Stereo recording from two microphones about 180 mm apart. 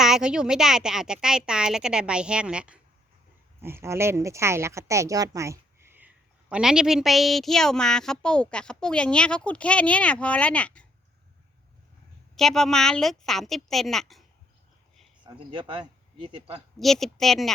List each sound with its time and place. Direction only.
0.0 s speech: 5° right (ahead or behind)
12.4 s speech: centre (ahead or behind)
15.2 s speech: 25° right (ahead or behind)
16.8 s speech: centre (ahead or behind)